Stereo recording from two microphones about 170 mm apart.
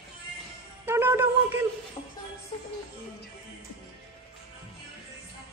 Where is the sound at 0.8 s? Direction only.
15° right (ahead or behind).